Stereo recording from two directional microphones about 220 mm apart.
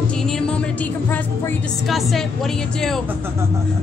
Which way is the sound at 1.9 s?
Centre (ahead or behind).